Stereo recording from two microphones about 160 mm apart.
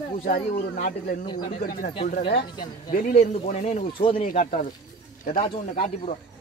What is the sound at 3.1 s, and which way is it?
Speech, 45° left (ahead or behind).